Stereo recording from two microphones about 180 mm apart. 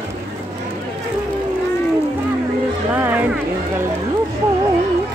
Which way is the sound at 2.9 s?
10° right (ahead or behind).